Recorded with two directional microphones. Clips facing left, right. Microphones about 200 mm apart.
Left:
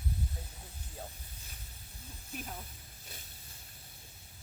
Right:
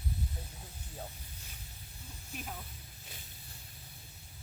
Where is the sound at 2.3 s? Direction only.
45° left (ahead or behind).